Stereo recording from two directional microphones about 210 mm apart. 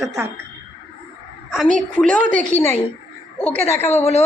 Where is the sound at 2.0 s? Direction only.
5° left (ahead or behind).